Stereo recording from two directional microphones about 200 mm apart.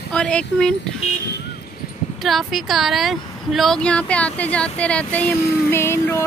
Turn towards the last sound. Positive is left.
turn(degrees=15)  # may be behind; listen again after turning